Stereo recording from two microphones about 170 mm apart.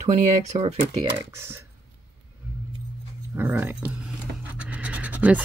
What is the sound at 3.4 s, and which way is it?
Speech, 10° right (ahead or behind).